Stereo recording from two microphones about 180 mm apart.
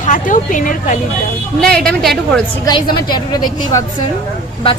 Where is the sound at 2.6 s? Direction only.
25° left (ahead or behind).